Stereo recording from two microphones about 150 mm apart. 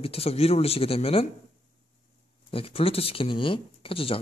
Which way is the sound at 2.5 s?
40° left (ahead or behind).